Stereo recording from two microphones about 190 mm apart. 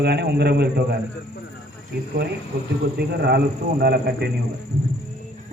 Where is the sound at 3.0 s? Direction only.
60° right (ahead or behind).